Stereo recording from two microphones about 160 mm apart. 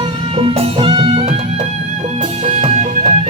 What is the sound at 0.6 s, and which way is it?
Music, 35° right (ahead or behind).